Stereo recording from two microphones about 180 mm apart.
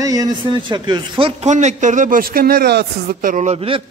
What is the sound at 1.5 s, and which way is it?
A man's voice, 45° right (ahead or behind).